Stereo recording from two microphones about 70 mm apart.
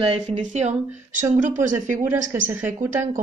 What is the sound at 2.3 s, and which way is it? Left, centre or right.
Speech, right.